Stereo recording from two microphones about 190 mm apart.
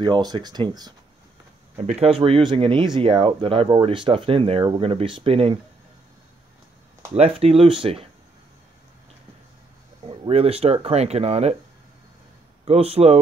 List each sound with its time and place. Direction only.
0.0 s speech: 20° right (ahead or behind)
7.2 s speech: 30° right (ahead or behind)
10.0 s speech: 30° right (ahead or behind)
12.6 s speech: 30° right (ahead or behind)